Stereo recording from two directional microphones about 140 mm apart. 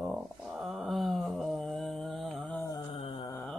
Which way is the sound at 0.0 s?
5° right (ahead or behind).